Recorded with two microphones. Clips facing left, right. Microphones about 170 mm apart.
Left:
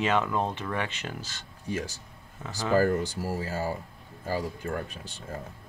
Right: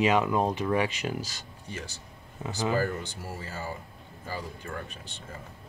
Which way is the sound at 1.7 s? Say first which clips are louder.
Left 7 dB; 40° left (ahead or behind).